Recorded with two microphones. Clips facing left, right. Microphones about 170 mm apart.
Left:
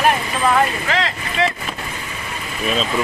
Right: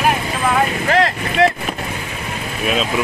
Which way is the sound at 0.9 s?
55° right (ahead or behind).